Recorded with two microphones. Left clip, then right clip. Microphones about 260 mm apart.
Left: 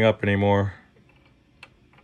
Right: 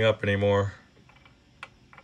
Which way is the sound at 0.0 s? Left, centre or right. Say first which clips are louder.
Left 3 dB; left.